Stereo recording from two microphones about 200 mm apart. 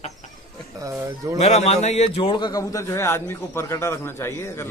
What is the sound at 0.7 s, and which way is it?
Speech, 15° right (ahead or behind).